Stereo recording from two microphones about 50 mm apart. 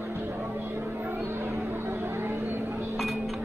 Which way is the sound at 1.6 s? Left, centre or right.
Right.